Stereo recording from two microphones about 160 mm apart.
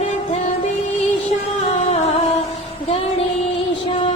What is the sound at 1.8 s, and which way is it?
Music, 40° left (ahead or behind).